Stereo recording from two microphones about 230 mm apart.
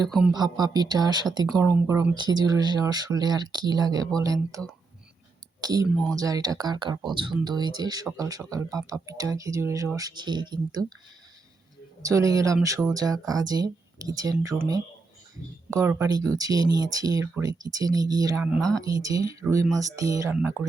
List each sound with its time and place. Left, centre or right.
0.3 s speech: centre
12.0 s speech: centre